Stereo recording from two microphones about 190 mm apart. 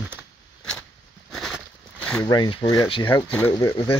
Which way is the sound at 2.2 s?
20° left (ahead or behind).